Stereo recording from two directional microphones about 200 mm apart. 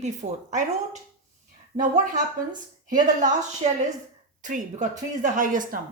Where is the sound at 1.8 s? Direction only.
40° right (ahead or behind).